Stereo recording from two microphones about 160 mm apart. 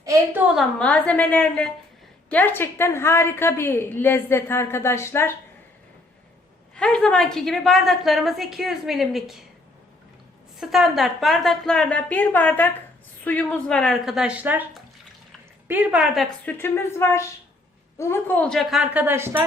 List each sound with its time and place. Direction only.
0.0 s a sound: 20° right (ahead or behind)
0.5 s a woman's voice: 5° left (ahead or behind)
6.7 s a woman's voice: 5° left (ahead or behind)
10.6 s a woman's voice: centre (ahead or behind)
16.5 s a woman's voice: 15° left (ahead or behind); by 19.5 s 15° right (ahead or behind)